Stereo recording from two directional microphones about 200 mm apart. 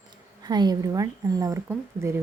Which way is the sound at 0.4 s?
20° right (ahead or behind).